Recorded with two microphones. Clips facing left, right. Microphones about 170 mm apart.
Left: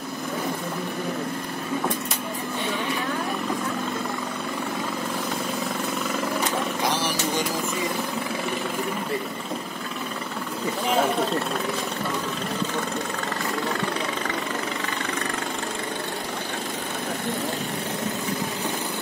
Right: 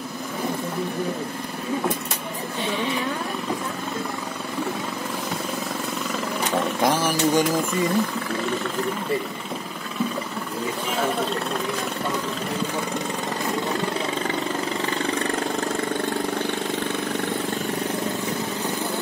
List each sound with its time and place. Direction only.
6.9 s vehicle: 50° right (ahead or behind)